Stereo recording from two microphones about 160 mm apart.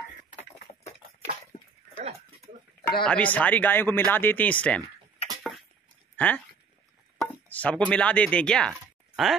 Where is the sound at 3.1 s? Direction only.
10° left (ahead or behind).